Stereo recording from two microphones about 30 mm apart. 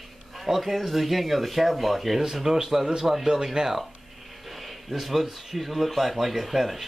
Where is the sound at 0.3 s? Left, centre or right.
Centre.